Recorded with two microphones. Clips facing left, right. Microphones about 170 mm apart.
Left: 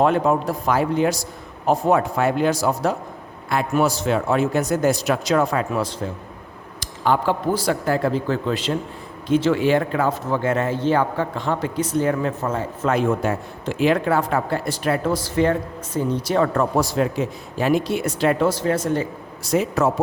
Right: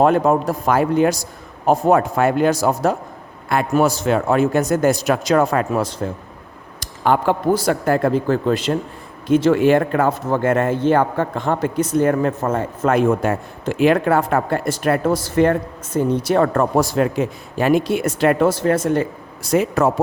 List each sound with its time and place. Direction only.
0.0 s a man's voice: 45° right (ahead or behind)